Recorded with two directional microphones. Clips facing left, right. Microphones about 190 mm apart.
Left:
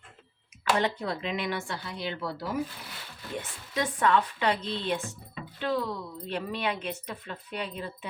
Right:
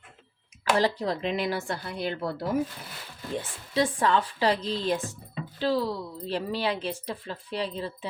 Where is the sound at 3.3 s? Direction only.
30° right (ahead or behind).